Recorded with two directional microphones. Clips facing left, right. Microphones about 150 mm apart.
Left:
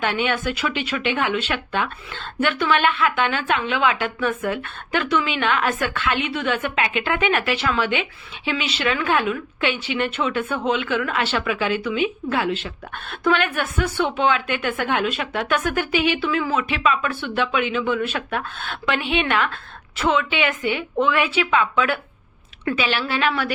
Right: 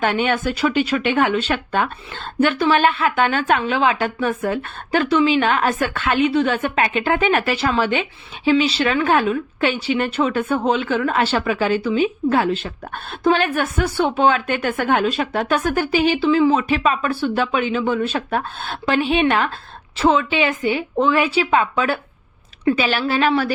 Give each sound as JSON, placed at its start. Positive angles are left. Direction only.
{"t": 0.0, "sound": "speech", "side_deg": -40}